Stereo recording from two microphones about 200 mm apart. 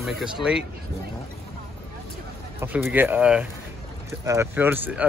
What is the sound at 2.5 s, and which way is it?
Speech, 10° right (ahead or behind).